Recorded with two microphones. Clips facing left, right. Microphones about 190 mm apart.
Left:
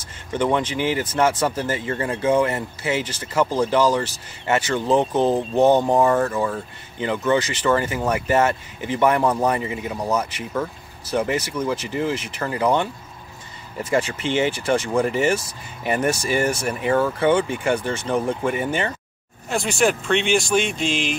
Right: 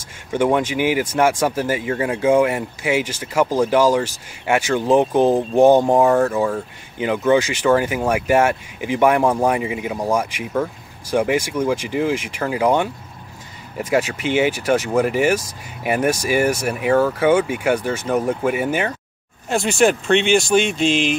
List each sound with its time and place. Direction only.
0.3 s speech: 10° right (ahead or behind)
19.5 s mantra: 25° right (ahead or behind)
20.2 s speech: 5° left (ahead or behind)
20.4 s mantra: 25° right (ahead or behind)